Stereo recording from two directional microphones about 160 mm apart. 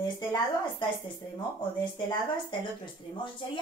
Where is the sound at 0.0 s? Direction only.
30° left (ahead or behind).